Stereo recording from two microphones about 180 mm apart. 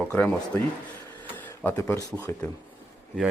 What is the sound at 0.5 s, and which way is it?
Speech, 15° left (ahead or behind).